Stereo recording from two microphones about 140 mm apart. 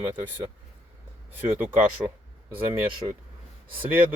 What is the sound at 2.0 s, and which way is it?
Speech, 10° right (ahead or behind).